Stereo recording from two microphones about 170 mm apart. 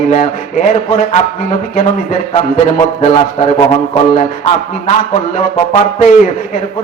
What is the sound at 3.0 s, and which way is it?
A man's voice, 40° left (ahead or behind).